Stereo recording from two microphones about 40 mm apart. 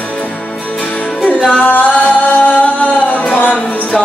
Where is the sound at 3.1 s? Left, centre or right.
Left.